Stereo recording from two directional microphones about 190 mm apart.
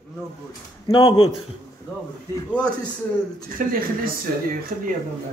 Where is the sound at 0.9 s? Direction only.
25° left (ahead or behind).